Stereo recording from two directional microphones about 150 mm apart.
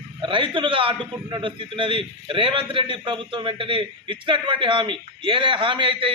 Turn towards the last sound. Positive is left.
turn(degrees=-35)  # may be behind; listen again after turning